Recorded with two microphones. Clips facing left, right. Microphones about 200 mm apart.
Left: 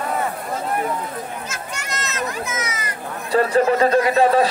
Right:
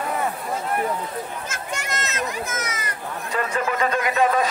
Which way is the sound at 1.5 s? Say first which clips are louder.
Right 1 dB; 50° right (ahead or behind).